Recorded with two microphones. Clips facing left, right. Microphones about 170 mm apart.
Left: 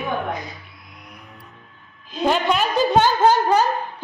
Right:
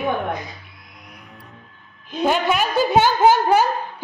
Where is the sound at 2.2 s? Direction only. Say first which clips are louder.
Even; 5° right (ahead or behind).